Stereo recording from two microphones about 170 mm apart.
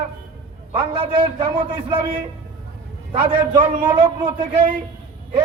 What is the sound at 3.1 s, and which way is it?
Speech, 40° right (ahead or behind).